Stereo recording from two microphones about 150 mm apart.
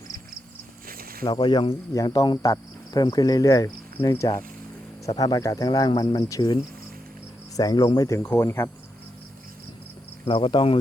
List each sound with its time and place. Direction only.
0.9 s snake: 75° right (ahead or behind)
1.3 s speech: 30° left (ahead or behind)
7.5 s cricket: 25° left (ahead or behind)
7.9 s speech: 20° left (ahead or behind)
10.2 s speech: 40° left (ahead or behind)